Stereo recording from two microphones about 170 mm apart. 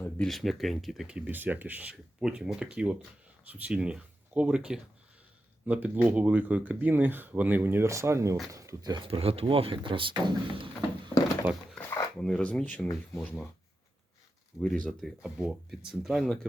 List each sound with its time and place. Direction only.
0.0 s speech: 5° left (ahead or behind); by 10.7 s 30° right (ahead or behind)
11.7 s speech: 10° left (ahead or behind)
14.8 s speech: centre (ahead or behind)